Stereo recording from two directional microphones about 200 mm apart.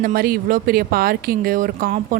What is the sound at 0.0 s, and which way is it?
Speech, 45° right (ahead or behind).